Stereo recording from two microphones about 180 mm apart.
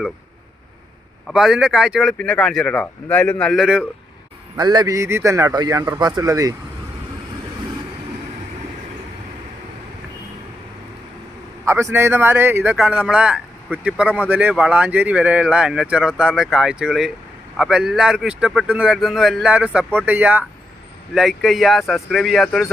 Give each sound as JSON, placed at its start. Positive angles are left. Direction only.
{"t": 1.3, "sound": "speech", "side_deg": -5}
{"t": 4.5, "sound": "a man's voice", "side_deg": -25}
{"t": 11.6, "sound": "speech", "side_deg": -15}